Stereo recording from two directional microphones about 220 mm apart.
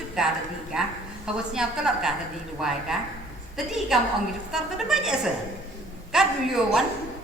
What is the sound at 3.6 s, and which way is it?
A woman's voice, centre (ahead or behind).